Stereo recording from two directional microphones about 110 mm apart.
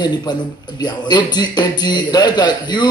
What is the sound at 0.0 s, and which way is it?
A man's voice, 40° left (ahead or behind).